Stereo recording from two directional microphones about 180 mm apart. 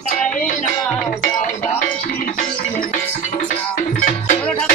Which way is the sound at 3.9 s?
45° left (ahead or behind).